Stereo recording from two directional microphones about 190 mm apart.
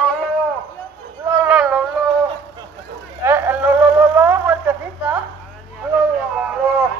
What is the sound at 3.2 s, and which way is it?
Vehicle, 15° right (ahead or behind).